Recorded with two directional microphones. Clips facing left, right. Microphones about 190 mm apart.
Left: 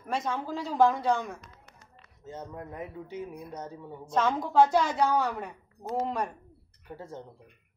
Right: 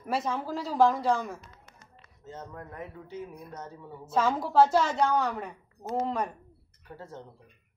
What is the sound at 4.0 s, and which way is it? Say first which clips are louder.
A woman's voice: even; 5° right (ahead or behind).